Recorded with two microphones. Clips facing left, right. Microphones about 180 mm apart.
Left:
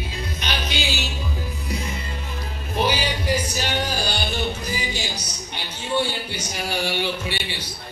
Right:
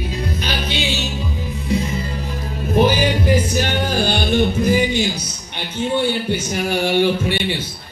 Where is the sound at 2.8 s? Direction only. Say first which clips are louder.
Right 7 dB; 50° right (ahead or behind).